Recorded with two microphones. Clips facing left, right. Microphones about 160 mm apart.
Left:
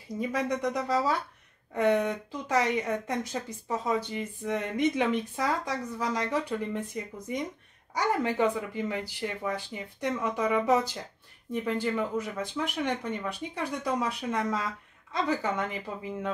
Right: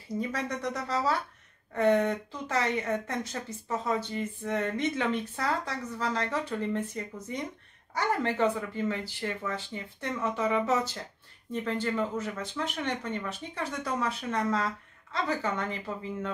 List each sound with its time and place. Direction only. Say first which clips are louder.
0.2 s speech: left 5 dB; 15° left (ahead or behind)